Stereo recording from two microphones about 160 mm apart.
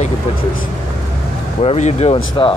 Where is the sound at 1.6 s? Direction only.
40° left (ahead or behind).